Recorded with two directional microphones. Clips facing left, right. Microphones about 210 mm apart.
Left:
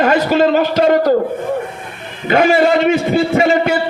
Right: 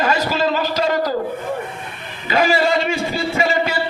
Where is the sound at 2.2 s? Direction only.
55° left (ahead or behind).